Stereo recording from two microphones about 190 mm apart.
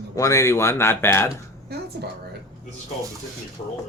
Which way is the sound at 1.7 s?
55° right (ahead or behind).